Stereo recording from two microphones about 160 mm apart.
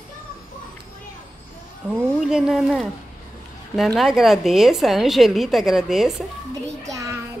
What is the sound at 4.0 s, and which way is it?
A woman's voice, centre (ahead or behind).